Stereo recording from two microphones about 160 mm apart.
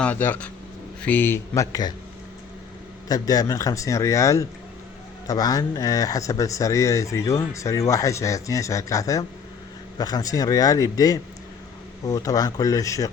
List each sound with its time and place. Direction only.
0.0 s speech: 10° left (ahead or behind)
3.1 s speech: 25° left (ahead or behind)